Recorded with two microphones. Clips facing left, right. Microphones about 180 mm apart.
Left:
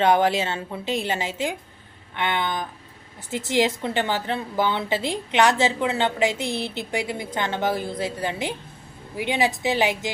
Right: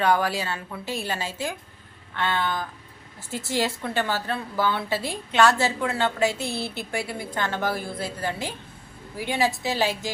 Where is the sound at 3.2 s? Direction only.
20° left (ahead or behind).